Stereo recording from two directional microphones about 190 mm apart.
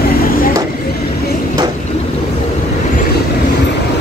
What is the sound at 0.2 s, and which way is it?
Vehicle, 50° left (ahead or behind).